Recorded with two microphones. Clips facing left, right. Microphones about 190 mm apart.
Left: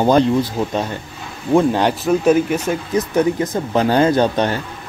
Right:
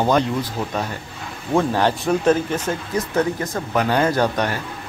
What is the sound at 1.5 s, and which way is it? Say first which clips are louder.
Speech: left 4 dB; 15° left (ahead or behind).